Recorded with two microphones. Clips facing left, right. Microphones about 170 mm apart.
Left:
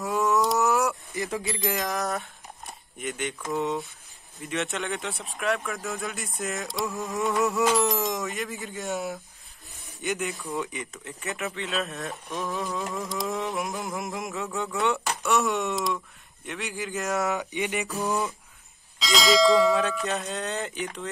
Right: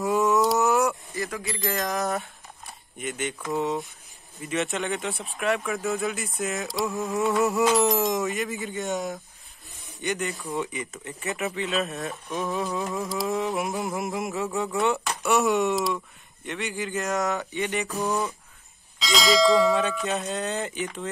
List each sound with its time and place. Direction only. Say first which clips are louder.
0.0 s a sound: right 3 dB; centre (ahead or behind)
1.1 s speech: left 1 dB; 20° left (ahead or behind)
1.8 s speech: right 2 dB; centre (ahead or behind)
17.5 s mantra: right 1 dB; 15° left (ahead or behind)
17.7 s speech: right 1 dB; centre (ahead or behind)